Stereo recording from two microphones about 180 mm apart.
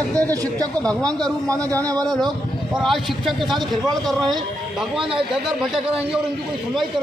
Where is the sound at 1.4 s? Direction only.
20° right (ahead or behind).